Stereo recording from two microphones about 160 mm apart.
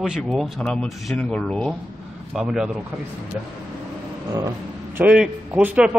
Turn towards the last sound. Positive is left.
turn(degrees=-10)  # may be behind; listen again after turning